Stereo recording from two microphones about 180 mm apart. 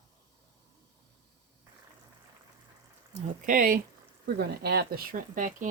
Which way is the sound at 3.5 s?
50° right (ahead or behind).